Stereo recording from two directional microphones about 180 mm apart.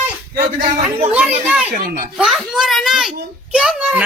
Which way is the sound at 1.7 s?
50° right (ahead or behind).